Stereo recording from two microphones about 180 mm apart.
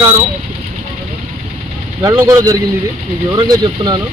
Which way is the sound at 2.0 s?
15° right (ahead or behind).